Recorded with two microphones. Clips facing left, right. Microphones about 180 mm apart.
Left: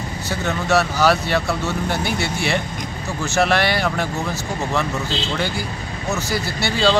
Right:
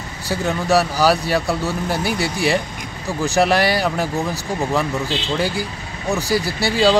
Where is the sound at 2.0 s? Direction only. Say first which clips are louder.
Right 3 dB; 35° right (ahead or behind).